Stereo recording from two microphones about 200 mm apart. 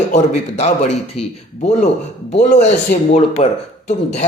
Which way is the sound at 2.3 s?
35° left (ahead or behind).